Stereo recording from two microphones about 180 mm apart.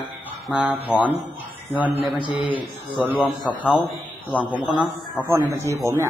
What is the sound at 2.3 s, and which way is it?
Speech, 30° left (ahead or behind).